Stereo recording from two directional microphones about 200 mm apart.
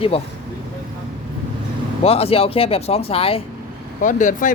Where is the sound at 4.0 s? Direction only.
40° left (ahead or behind).